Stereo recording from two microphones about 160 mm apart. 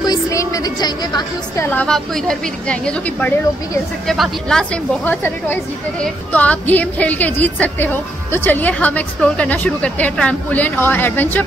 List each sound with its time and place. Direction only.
0.0 s music: 20° left (ahead or behind)
1.6 s speech: 10° left (ahead or behind)